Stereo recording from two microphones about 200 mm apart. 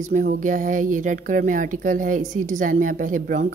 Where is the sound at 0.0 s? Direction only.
40° right (ahead or behind).